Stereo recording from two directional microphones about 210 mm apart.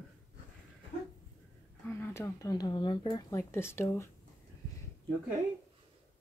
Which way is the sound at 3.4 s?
10° left (ahead or behind).